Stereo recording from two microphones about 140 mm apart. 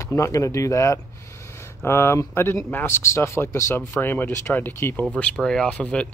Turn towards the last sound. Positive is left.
turn(degrees=10)  # may be behind; listen again after turning